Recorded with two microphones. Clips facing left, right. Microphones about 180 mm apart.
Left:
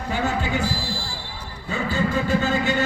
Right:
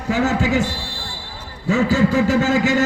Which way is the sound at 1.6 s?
90° right.